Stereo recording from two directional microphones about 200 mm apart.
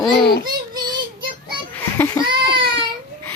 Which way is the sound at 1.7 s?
10° left (ahead or behind).